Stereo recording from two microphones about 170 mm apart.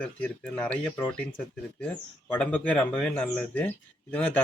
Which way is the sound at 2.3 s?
5° left (ahead or behind).